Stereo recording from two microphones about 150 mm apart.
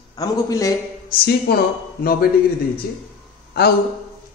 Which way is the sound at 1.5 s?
90° left.